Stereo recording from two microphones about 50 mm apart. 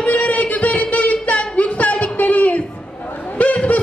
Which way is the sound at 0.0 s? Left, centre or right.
Left.